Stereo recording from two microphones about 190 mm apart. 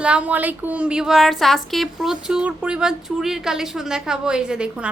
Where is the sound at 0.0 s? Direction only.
5° right (ahead or behind).